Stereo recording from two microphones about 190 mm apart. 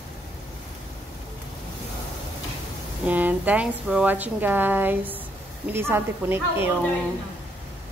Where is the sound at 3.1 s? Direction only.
10° right (ahead or behind).